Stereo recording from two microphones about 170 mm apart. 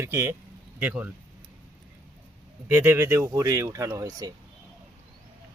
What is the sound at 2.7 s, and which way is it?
Speech, 15° right (ahead or behind).